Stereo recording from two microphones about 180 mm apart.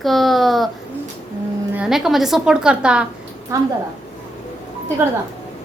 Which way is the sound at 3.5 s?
15° right (ahead or behind).